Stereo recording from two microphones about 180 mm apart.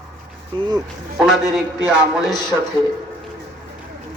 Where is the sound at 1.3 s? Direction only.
Centre (ahead or behind).